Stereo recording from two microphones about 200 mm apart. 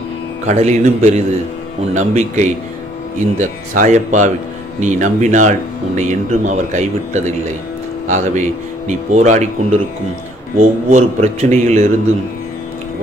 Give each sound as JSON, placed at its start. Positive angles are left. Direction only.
{"t": 0.5, "sound": "speech", "side_deg": -35}